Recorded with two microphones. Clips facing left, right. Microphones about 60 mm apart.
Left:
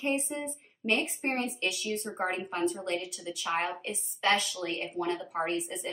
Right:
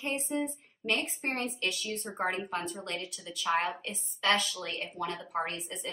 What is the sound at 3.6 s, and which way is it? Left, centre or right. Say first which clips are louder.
Speech: left 1 dB; left.